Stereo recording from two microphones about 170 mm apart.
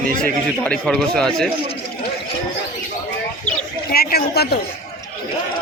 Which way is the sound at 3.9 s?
65° left (ahead or behind).